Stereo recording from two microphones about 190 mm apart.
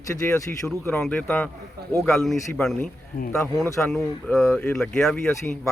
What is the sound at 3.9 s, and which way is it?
Speech, 5° left (ahead or behind).